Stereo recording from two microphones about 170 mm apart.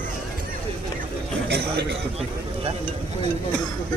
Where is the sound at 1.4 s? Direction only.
75° right (ahead or behind).